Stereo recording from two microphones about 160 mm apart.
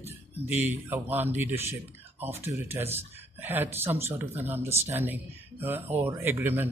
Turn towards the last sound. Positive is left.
turn(degrees=-15)  # may be behind; listen again after turning